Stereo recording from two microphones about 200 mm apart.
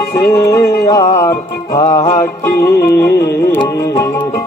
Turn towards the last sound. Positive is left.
turn(degrees=20)  # may be behind; listen again after turning